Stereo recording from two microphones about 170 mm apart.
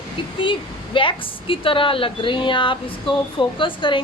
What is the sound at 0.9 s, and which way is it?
A woman's voice, 30° left (ahead or behind).